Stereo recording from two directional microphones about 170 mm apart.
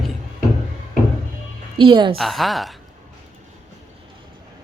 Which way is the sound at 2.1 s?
Centre (ahead or behind).